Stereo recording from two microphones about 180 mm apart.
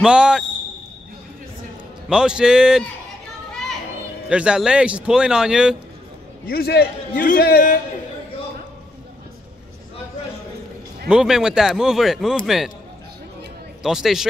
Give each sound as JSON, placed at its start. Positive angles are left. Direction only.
{"t": 0.0, "sound": "a man's voice", "side_deg": -5}
{"t": 2.0, "sound": "a man's voice", "side_deg": -5}
{"t": 4.3, "sound": "a man's voice", "side_deg": -5}
{"t": 6.4, "sound": "a man's voice", "side_deg": 60}
{"t": 11.1, "sound": "a man's voice", "side_deg": -5}
{"t": 13.8, "sound": "a man's voice", "side_deg": 0}